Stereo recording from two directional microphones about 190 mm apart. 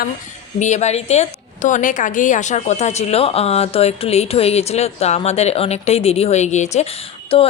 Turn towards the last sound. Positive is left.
turn(degrees=30)  # may be behind; listen again after turning